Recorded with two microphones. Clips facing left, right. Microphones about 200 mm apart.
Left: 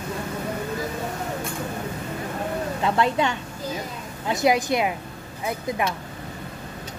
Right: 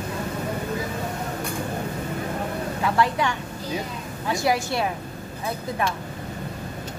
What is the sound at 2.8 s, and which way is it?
A woman's voice, 25° left (ahead or behind).